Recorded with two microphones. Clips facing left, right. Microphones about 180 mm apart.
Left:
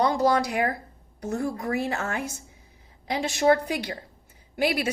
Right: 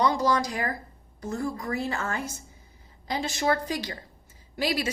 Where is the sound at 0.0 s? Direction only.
55° left (ahead or behind).